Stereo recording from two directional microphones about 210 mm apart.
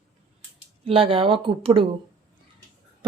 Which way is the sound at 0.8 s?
25° right (ahead or behind).